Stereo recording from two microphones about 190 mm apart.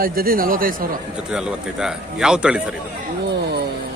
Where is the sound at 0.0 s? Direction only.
50° right (ahead or behind).